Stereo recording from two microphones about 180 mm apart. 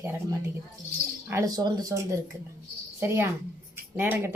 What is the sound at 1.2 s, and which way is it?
Speech, 15° right (ahead or behind).